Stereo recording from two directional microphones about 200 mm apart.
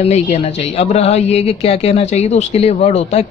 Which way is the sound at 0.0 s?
30° left (ahead or behind).